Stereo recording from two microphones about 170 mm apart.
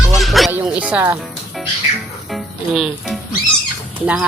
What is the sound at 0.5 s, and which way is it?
Speech, 5° right (ahead or behind).